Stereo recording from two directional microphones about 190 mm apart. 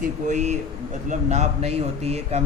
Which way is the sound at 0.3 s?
40° right (ahead or behind).